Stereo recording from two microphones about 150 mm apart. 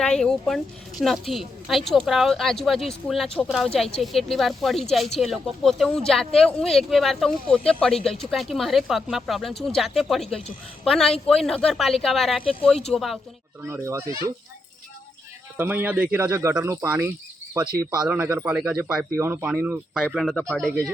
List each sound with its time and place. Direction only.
0.0 s speech: 5° left (ahead or behind)
13.6 s speech: 15° right (ahead or behind)
15.5 s speech: 15° right (ahead or behind)
18.1 s speech: 15° right (ahead or behind)